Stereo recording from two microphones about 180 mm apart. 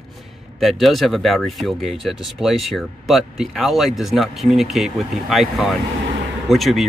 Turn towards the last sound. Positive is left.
turn(degrees=0)  # may be behind; listen again after turning